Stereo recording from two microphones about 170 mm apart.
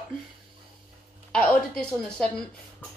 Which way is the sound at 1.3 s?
5° left (ahead or behind).